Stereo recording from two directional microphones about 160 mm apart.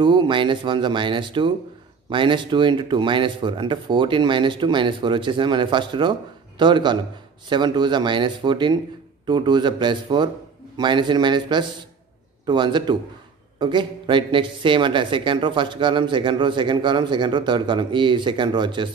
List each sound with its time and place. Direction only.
0.0 s speech: 30° right (ahead or behind)